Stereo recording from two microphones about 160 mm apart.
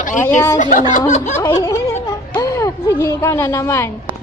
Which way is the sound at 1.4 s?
20° left (ahead or behind).